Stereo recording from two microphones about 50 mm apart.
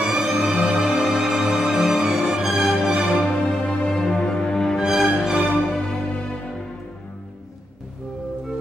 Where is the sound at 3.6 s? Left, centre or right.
Left.